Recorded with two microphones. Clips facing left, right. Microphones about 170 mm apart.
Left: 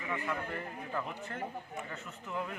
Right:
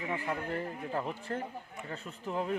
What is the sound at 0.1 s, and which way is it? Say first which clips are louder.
A man's voice: right 1 dB; 30° right (ahead or behind).